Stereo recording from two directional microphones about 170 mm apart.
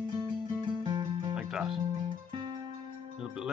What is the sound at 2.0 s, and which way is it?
Music, 25° right (ahead or behind).